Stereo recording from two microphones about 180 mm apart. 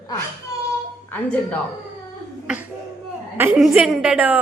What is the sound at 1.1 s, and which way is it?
Speech, 10° left (ahead or behind).